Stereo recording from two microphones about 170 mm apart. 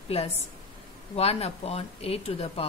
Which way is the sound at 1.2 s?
35° left (ahead or behind).